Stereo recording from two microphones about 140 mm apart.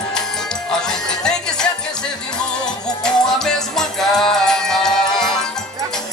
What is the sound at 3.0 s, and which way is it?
Music, 5° left (ahead or behind).